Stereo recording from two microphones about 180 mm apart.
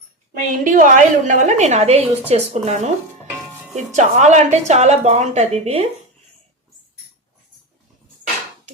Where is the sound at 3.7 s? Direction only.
40° right (ahead or behind).